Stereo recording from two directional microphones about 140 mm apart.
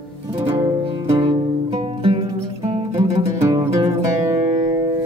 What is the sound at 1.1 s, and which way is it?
Music, 40° right (ahead or behind).